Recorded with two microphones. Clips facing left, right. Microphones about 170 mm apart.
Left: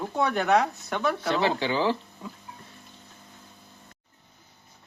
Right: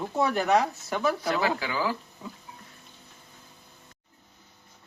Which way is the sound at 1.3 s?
25° left (ahead or behind).